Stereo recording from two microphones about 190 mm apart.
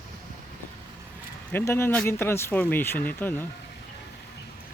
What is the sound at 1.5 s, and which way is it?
Speech, 10° left (ahead or behind).